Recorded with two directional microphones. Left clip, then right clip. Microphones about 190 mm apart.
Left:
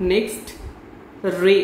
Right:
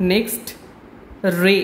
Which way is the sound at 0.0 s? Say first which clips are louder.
Even; 45° right (ahead or behind).